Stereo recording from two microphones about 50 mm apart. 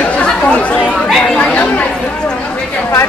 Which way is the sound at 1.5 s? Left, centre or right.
Left.